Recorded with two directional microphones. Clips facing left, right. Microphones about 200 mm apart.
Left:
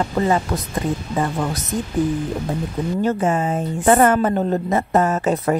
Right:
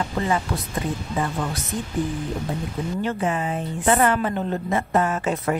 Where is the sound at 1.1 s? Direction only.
40° left (ahead or behind).